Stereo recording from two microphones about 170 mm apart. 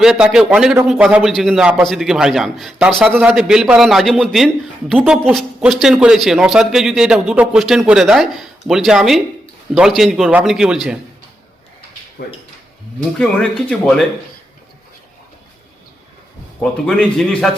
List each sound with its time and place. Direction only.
0.0 s a man's voice: 5° right (ahead or behind)
13.1 s a man's voice: 5° left (ahead or behind)
16.6 s a man's voice: 5° left (ahead or behind)